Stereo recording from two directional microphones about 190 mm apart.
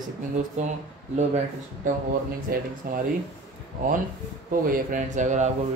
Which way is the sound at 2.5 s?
50° right (ahead or behind).